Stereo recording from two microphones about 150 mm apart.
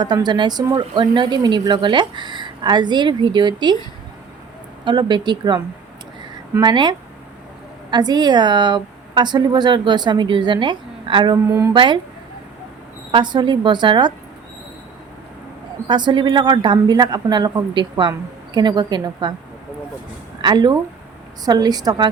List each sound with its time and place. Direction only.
0.0 s speech: 30° right (ahead or behind)
4.9 s speech: 30° right (ahead or behind)
6.6 s speech: 30° right (ahead or behind)
13.1 s speech: 30° right (ahead or behind)
15.9 s speech: 30° right (ahead or behind)
20.4 s speech: 30° right (ahead or behind)